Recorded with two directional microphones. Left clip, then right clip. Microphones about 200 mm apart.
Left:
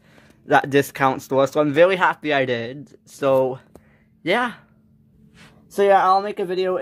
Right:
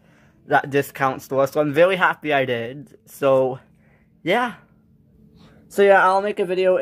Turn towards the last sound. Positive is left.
turn(degrees=10)  # may be behind; listen again after turning